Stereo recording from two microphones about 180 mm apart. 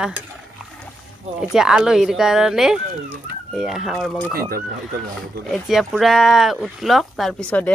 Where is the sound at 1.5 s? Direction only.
5° right (ahead or behind).